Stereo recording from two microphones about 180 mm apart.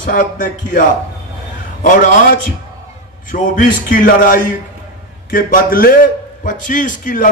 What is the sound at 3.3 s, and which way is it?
A man's voice, 50° left (ahead or behind).